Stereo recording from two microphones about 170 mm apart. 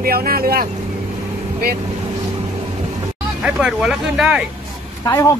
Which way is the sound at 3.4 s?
5° right (ahead or behind).